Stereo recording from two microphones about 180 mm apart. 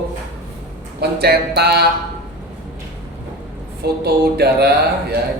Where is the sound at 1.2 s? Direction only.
60° right (ahead or behind).